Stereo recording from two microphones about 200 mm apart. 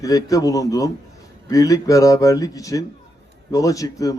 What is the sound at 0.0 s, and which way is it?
Speech, 15° left (ahead or behind).